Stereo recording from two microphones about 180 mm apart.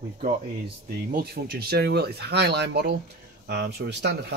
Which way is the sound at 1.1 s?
60° right (ahead or behind).